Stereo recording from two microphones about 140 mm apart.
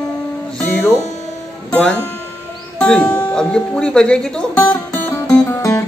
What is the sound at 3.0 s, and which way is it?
Music, 20° left (ahead or behind).